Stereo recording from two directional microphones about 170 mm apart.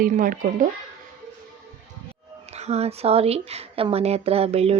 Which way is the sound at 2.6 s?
40° right (ahead or behind).